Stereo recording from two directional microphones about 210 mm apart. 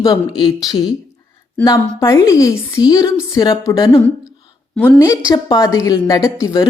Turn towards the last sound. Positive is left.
turn(degrees=15)  # may be behind; listen again after turning